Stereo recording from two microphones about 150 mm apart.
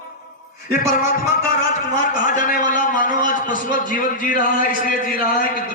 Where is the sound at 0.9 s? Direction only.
60° left (ahead or behind).